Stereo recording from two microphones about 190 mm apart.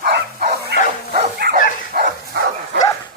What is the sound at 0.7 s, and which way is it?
Bow-wow, 60° right (ahead or behind).